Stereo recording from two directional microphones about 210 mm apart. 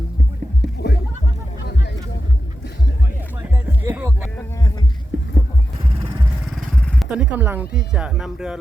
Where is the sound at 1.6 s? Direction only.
55° left (ahead or behind).